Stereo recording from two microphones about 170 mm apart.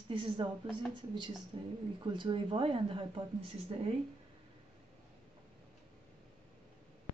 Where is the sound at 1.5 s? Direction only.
30° right (ahead or behind).